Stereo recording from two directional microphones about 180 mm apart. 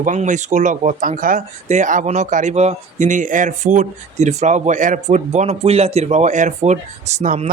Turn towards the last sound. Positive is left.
turn(degrees=-40)  # may be behind; listen again after turning